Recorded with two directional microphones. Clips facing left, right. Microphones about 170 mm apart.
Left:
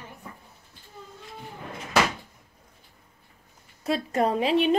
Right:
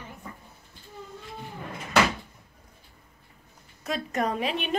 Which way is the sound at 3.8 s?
30° left (ahead or behind).